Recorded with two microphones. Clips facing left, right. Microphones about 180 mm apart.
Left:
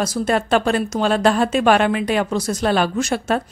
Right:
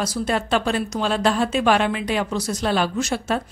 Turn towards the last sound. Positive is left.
turn(degrees=55)  # may be behind; listen again after turning